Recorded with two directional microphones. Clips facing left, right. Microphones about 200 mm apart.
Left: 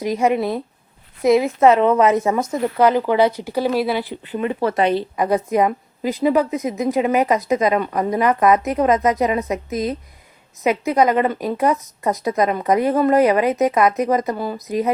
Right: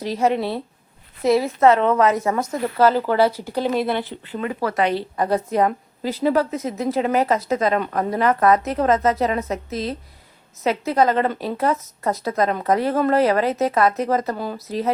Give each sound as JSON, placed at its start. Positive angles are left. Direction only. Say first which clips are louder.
{"t": 0.0, "sound": "a woman's voice", "louder": "left 2 dB", "side_deg": 15}
{"t": 4.3, "sound": "a woman's voice", "louder": "left 5 dB", "side_deg": 20}